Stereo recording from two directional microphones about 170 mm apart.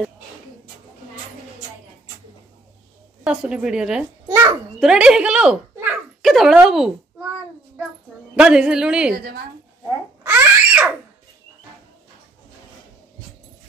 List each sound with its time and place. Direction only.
3.3 s a woman's voice: 5° right (ahead or behind)
4.3 s a child's voice: 20° right (ahead or behind)
4.7 s speech: 5° right (ahead or behind)
8.4 s a woman's voice: 5° right (ahead or behind)
9.1 s a woman's voice: 70° right (ahead or behind)
10.2 s baby laughter: 10° right (ahead or behind)